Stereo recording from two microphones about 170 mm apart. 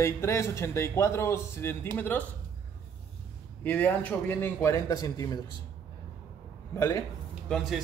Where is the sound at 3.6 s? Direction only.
10° left (ahead or behind).